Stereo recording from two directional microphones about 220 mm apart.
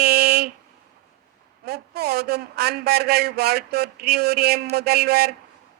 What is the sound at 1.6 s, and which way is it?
A man's voice, 45° right (ahead or behind).